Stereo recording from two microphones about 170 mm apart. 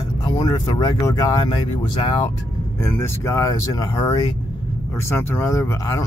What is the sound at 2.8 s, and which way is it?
Speech, 15° left (ahead or behind).